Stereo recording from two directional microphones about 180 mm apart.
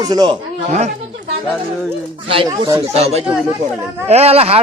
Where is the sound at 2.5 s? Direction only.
20° right (ahead or behind).